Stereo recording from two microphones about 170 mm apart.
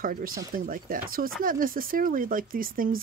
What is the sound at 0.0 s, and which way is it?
Speech, 55° right (ahead or behind).